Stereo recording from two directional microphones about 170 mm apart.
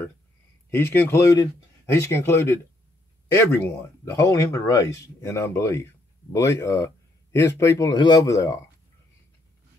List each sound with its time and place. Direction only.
0.7 s speech: 15° left (ahead or behind)